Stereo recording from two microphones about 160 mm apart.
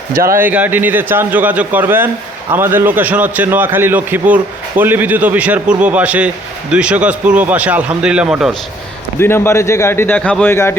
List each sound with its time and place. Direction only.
0.1 s speech: 65° right (ahead or behind)
0.3 s a man's voice: 10° right (ahead or behind)
9.1 s speech: 15° left (ahead or behind)